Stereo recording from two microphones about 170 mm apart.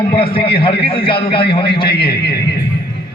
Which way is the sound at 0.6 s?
35° left (ahead or behind).